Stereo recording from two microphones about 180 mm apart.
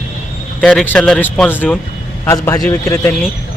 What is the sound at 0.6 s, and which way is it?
Speech, 5° left (ahead or behind).